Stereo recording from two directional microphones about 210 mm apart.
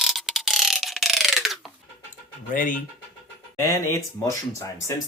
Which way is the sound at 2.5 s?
40° left (ahead or behind).